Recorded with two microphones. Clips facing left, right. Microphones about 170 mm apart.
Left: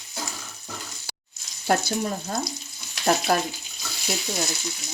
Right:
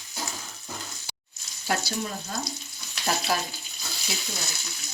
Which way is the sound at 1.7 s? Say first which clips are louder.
Left 6 dB; 45° left (ahead or behind).